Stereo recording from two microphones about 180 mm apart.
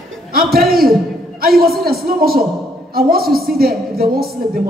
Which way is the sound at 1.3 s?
55° right (ahead or behind).